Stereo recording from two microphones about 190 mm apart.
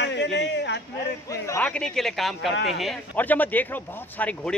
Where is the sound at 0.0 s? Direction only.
65° left (ahead or behind).